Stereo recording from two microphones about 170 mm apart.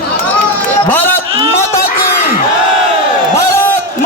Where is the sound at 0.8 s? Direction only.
10° left (ahead or behind).